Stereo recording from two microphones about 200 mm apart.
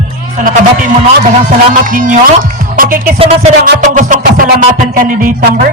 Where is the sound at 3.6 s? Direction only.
40° right (ahead or behind).